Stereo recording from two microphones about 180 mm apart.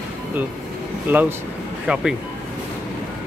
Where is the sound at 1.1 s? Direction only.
10° right (ahead or behind).